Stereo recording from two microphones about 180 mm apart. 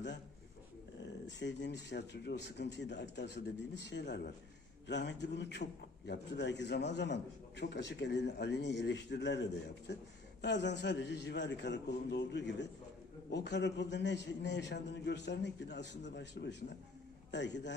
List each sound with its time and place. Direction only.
1.2 s a man's voice: 75° left (ahead or behind)